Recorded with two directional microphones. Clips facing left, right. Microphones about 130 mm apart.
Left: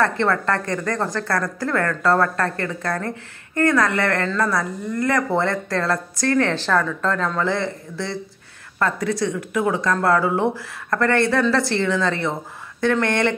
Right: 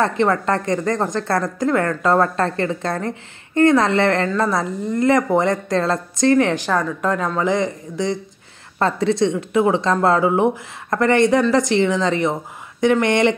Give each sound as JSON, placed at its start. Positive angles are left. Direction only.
{"t": 0.0, "sound": "a woman's voice", "side_deg": -20}